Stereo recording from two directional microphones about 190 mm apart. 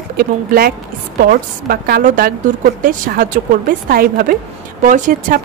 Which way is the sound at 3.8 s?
50° right (ahead or behind).